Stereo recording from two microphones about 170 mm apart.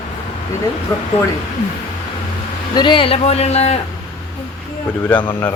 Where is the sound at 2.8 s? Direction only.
30° left (ahead or behind).